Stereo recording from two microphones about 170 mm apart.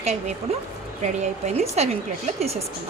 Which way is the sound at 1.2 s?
40° right (ahead or behind).